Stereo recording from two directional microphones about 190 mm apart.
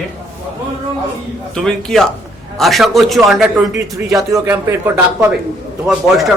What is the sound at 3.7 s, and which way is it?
A man's voice, 15° right (ahead or behind).